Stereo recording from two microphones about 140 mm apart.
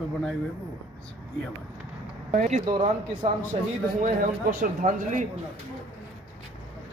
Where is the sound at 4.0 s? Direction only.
70° right (ahead or behind).